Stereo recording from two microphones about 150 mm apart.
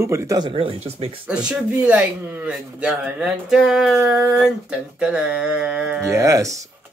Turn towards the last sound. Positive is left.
turn(degrees=-20)  # may be behind; listen again after turning